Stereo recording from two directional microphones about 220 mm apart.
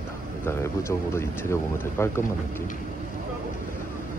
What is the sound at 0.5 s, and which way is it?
Speech, 10° left (ahead or behind).